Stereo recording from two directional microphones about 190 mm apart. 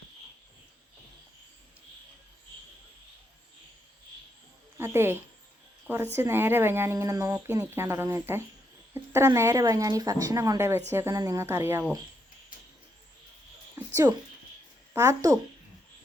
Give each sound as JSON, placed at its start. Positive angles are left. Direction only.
{"t": 4.8, "sound": "speech", "side_deg": -10}
{"t": 6.1, "sound": "speech", "side_deg": -10}
{"t": 13.7, "sound": "a sound", "side_deg": -15}
{"t": 14.9, "sound": "speech", "side_deg": -15}